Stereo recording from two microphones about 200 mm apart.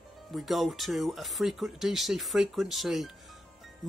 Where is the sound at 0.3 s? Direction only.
Centre (ahead or behind).